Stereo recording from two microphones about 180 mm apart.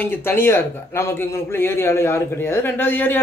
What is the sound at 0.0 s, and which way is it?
A man's voice, 10° left (ahead or behind).